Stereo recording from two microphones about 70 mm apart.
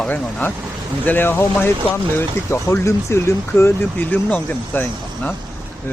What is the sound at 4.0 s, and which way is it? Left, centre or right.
Speech, left.